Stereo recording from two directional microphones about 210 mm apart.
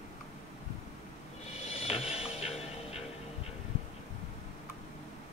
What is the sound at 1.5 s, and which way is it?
Music, 30° left (ahead or behind).